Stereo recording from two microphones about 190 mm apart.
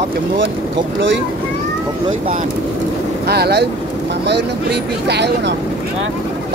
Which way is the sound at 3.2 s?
60° right (ahead or behind).